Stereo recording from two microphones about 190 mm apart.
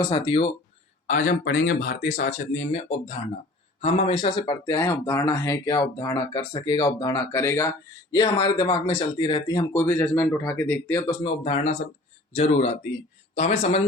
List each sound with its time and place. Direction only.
0.1 s speech: 30° left (ahead or behind)
1.0 s speech: 45° left (ahead or behind)
3.8 s speech: 35° left (ahead or behind); by 11.3 s 20° left (ahead or behind)
11.4 s speech: 35° left (ahead or behind)